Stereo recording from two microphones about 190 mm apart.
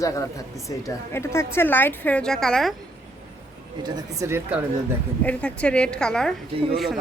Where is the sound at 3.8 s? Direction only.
20° right (ahead or behind).